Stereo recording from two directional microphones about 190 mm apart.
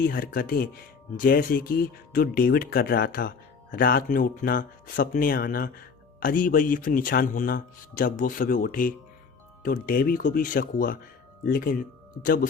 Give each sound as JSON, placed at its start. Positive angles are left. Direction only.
{"t": 0.0, "sound": "speech", "side_deg": 50}